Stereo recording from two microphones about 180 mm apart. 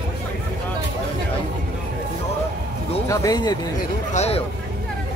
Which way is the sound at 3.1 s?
20° left (ahead or behind).